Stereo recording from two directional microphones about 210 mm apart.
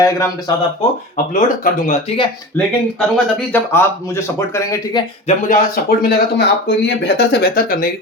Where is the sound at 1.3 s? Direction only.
40° left (ahead or behind).